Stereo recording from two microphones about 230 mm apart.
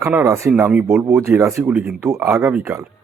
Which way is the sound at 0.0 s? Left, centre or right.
Centre.